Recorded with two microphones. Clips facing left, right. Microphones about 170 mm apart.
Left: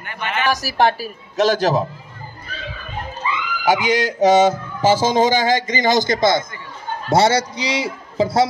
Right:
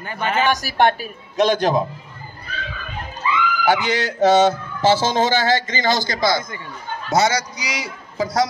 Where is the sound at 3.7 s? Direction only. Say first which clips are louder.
Left 4 dB; 10° left (ahead or behind).